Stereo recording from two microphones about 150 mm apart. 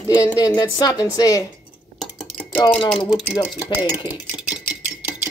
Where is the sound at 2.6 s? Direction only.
30° left (ahead or behind).